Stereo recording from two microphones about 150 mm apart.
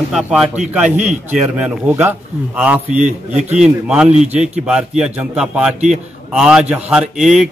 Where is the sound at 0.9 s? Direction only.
50° right (ahead or behind).